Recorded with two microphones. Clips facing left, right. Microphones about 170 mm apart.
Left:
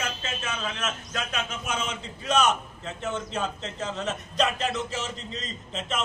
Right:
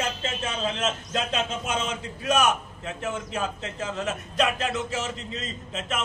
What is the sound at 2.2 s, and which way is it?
A man's voice, 10° right (ahead or behind).